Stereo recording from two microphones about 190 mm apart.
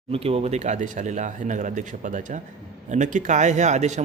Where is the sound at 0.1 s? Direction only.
30° right (ahead or behind).